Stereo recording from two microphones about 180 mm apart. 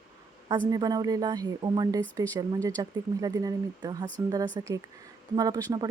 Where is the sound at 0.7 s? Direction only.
20° right (ahead or behind).